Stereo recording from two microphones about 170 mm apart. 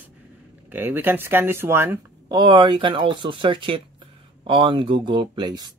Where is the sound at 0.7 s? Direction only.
10° right (ahead or behind).